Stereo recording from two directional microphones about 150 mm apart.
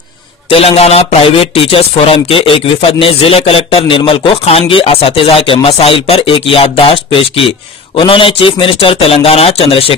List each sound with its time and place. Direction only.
0.5 s speech: 40° left (ahead or behind)